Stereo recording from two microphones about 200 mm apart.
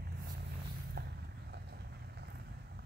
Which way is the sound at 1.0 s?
50° right (ahead or behind).